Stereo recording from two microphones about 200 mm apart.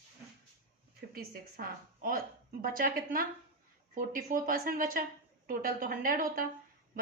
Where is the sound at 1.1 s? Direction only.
45° right (ahead or behind).